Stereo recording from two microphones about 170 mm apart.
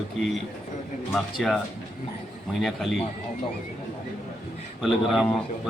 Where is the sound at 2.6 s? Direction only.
Centre (ahead or behind).